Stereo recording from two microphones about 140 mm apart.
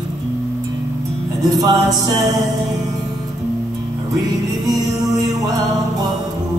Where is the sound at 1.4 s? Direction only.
25° right (ahead or behind).